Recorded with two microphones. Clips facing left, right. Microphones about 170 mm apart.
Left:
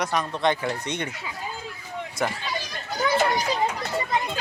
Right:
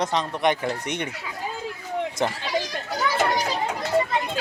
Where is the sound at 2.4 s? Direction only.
90° right.